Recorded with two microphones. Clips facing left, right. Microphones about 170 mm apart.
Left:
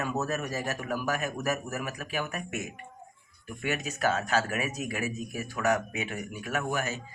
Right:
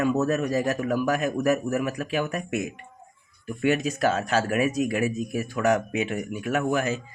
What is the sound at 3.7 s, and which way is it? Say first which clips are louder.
Speech: right 6 dB; 30° right (ahead or behind).